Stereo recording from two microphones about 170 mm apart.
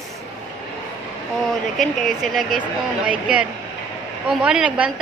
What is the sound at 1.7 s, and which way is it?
A woman's voice, centre (ahead or behind).